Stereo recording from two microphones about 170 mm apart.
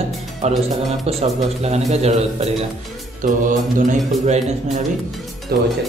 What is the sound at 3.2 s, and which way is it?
Speech, 50° right (ahead or behind).